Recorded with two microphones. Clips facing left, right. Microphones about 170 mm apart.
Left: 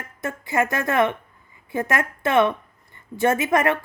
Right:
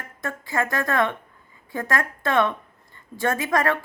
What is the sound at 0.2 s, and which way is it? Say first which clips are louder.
Speech: left 3 dB; 20° left (ahead or behind).